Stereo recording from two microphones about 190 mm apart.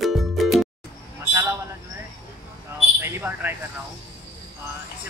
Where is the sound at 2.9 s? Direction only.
10° right (ahead or behind).